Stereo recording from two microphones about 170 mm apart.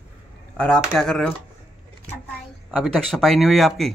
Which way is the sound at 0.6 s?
5° left (ahead or behind).